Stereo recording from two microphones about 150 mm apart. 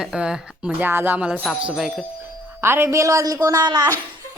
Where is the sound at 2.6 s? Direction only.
15° right (ahead or behind).